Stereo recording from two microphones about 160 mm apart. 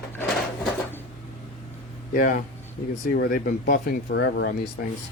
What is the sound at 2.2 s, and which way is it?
Speech, 60° left (ahead or behind).